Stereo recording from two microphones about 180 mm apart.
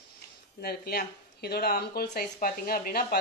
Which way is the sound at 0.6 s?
60° left (ahead or behind).